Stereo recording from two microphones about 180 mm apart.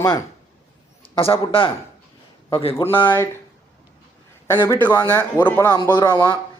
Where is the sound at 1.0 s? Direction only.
30° left (ahead or behind).